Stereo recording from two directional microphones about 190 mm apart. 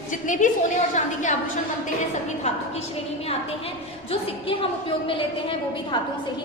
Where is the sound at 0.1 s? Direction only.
40° left (ahead or behind).